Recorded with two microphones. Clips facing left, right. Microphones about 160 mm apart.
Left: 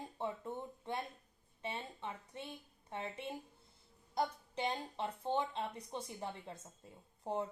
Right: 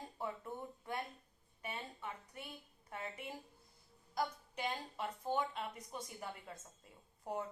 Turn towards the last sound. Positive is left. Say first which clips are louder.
# left 3 dB
turn(degrees=30)  # may be behind; listen again after turning